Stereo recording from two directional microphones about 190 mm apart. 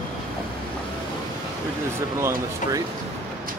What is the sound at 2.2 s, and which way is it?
Speech, 15° right (ahead or behind).